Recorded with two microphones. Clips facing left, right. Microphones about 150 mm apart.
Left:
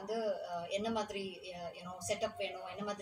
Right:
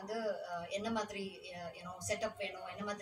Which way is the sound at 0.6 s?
10° left (ahead or behind).